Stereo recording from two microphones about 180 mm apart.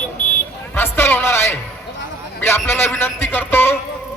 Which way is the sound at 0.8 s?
10° left (ahead or behind).